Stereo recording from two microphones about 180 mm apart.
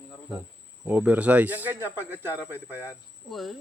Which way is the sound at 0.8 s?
10° right (ahead or behind).